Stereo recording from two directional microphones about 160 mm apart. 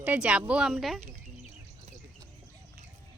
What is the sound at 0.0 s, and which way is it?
Speech, 10° right (ahead or behind).